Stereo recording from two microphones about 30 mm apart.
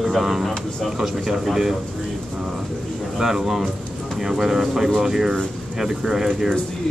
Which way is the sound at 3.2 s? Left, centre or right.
Centre.